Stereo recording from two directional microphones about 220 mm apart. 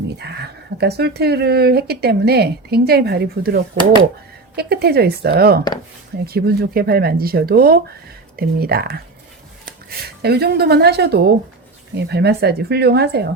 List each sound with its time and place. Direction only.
0.2 s speech: 50° right (ahead or behind)